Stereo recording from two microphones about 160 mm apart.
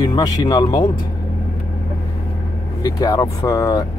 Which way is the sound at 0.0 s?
25° left (ahead or behind).